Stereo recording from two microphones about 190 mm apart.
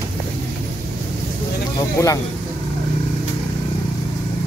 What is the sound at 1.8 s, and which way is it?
Speech, 15° left (ahead or behind).